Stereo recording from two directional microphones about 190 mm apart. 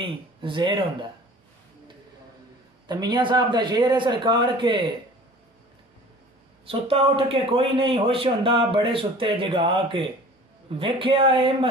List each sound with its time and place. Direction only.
0.0 s a man's voice: 25° right (ahead or behind)
2.9 s a man's voice: 20° right (ahead or behind)
6.6 s a man's voice: 30° right (ahead or behind)